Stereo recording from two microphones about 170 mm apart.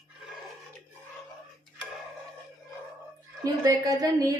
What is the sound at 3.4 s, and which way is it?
Speech, 20° right (ahead or behind).